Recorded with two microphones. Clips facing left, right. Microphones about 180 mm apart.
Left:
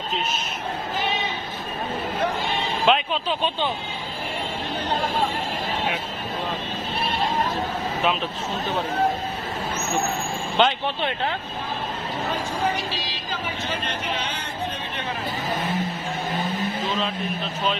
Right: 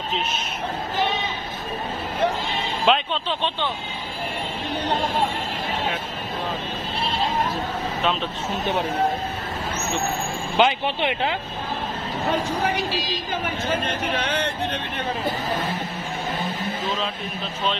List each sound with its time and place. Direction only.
2.8 s speech: 5° left (ahead or behind)
10.6 s speech: 15° right (ahead or behind)
13.7 s speech: 60° right (ahead or behind)